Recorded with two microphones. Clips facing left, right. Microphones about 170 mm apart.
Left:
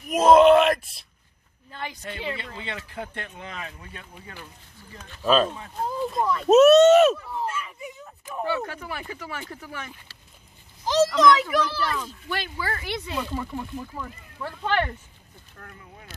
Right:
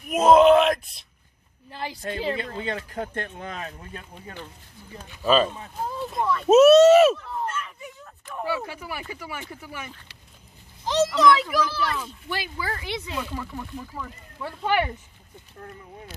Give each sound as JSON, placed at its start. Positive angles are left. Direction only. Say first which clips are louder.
{"t": 0.1, "sound": "speech", "louder": "even", "side_deg": 0}
{"t": 1.7, "sound": "speech", "louder": "right 4 dB", "side_deg": -30}
{"t": 5.2, "sound": "a child's voice", "louder": "even", "side_deg": 0}
{"t": 7.4, "sound": "a sound", "louder": "left 1 dB", "side_deg": 5}
{"t": 8.5, "sound": "a child's voice", "louder": "even", "side_deg": -5}
{"t": 13.1, "sound": "speech", "louder": "left 2 dB", "side_deg": 10}
{"t": 14.4, "sound": "speech", "louder": "right 1 dB", "side_deg": -10}
{"t": 15.6, "sound": "speech", "louder": "right 5 dB", "side_deg": -20}